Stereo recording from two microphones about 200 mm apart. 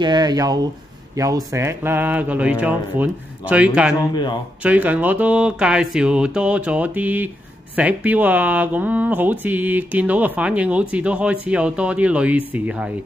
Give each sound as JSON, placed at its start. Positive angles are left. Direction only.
{"t": 0.0, "sound": "speech", "side_deg": -20}
{"t": 4.1, "sound": "a man's voice", "side_deg": 20}
{"t": 4.6, "sound": "speech", "side_deg": -10}